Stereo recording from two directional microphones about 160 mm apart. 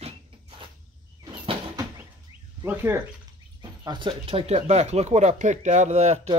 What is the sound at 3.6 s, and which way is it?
Speech, 30° right (ahead or behind).